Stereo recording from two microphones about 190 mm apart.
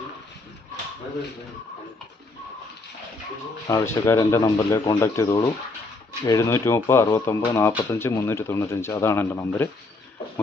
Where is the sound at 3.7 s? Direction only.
15° left (ahead or behind).